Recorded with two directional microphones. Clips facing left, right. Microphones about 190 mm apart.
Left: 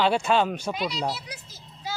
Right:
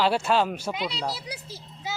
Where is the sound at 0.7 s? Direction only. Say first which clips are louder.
Left 2 dB; 25° right (ahead or behind).